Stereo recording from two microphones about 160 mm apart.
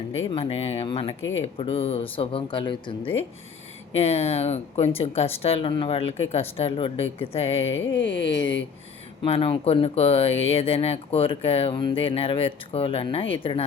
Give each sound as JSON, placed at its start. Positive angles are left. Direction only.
{"t": 0.3, "sound": "speech", "side_deg": 35}
{"t": 7.9, "sound": "speech", "side_deg": 90}
{"t": 8.2, "sound": "speech", "side_deg": 35}